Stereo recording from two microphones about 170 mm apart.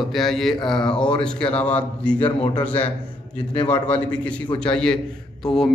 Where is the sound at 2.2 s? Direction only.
35° left (ahead or behind).